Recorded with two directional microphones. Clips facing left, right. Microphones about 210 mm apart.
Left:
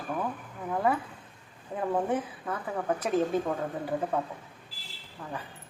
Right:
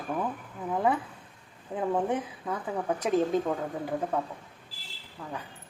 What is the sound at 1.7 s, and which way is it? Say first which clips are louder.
Speech: right 1 dB; centre (ahead or behind).